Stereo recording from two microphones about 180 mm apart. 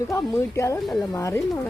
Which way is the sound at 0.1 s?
15° left (ahead or behind).